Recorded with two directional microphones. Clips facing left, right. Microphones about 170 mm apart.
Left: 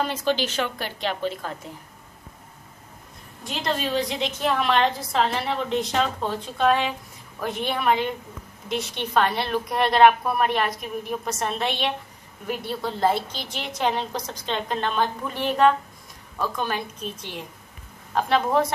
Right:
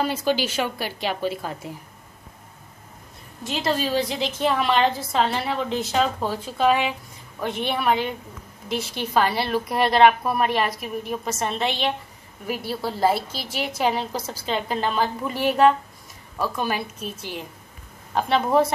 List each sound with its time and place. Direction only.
0.0 s a woman's voice: 10° right (ahead or behind)
3.4 s a woman's voice: centre (ahead or behind)